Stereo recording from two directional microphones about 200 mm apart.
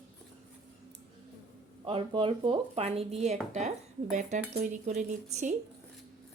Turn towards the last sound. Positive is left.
turn(degrees=-35)  # may be behind; listen again after turning